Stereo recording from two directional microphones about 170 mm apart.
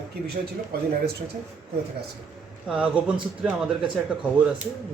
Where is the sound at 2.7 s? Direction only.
5° right (ahead or behind).